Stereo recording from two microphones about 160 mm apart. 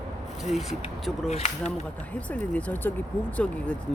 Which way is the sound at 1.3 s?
45° left (ahead or behind).